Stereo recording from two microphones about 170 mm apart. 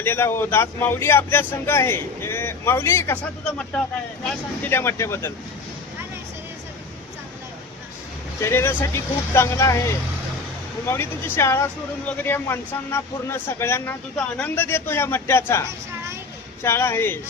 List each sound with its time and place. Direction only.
0.0 s speech: 15° left (ahead or behind)
3.6 s speech: 5° left (ahead or behind)
8.4 s speech: 15° left (ahead or behind)
16.6 s speech: 15° left (ahead or behind)